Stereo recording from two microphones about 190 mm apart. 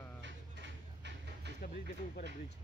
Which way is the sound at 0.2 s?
70° right (ahead or behind).